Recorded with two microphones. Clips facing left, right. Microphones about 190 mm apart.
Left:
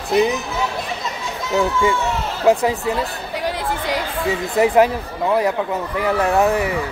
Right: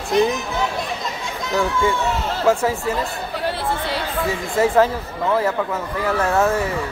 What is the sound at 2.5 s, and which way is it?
Speech, 15° left (ahead or behind).